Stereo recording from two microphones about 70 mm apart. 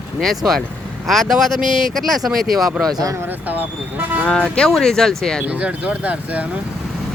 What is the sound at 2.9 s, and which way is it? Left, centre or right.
Speech, right.